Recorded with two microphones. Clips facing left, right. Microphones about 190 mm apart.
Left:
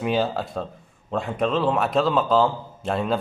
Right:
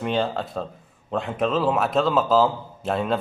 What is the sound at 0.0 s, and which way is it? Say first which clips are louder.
Speech: left 1 dB; 5° left (ahead or behind).